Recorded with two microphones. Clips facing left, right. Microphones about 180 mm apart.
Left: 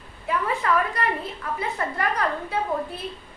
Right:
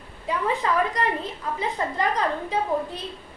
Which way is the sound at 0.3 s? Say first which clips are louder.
Even; 20° right (ahead or behind).